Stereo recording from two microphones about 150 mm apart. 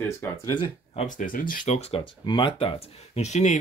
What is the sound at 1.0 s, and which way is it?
Speech, 65° left (ahead or behind).